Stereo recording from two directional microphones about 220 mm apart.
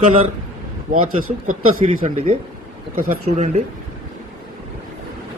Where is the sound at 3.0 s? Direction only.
40° right (ahead or behind).